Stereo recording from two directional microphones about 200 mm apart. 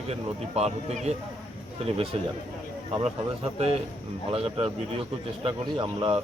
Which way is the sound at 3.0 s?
30° right (ahead or behind).